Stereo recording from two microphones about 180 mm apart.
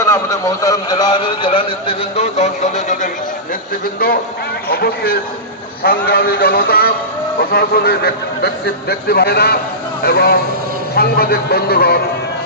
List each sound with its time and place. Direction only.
0.0 s a man's voice: 15° left (ahead or behind); by 3.1 s 40° left (ahead or behind)
4.7 s a man's voice: 60° left (ahead or behind)